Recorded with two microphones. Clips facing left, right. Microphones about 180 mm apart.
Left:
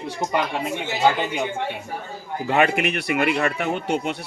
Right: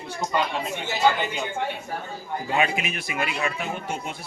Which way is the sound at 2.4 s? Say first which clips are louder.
Left 6 dB; 65° left (ahead or behind).